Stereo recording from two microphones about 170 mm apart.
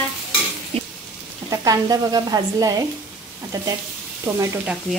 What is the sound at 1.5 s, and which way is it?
Sizzle, 20° right (ahead or behind).